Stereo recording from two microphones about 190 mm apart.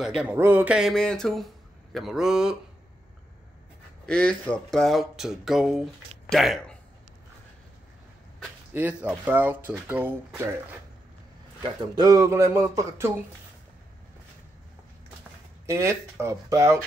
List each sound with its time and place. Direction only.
0.0 s speech: 5° right (ahead or behind)
4.0 s speech: 5° left (ahead or behind)
8.4 s a man's voice: 10° right (ahead or behind)
11.6 s a man's voice: 20° right (ahead or behind)
15.6 s a man's voice: 15° right (ahead or behind)